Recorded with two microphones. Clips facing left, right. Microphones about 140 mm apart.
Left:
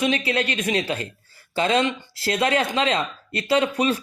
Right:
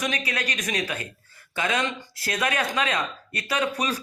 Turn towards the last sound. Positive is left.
turn(degrees=30)  # may be behind; listen again after turning